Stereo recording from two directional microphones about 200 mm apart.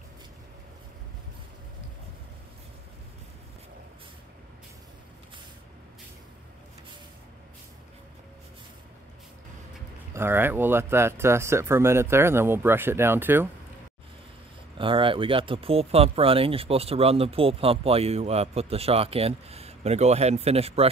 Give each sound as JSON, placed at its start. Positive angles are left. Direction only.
{"t": 10.1, "sound": "speech", "side_deg": -10}
{"t": 14.8, "sound": "speech", "side_deg": -25}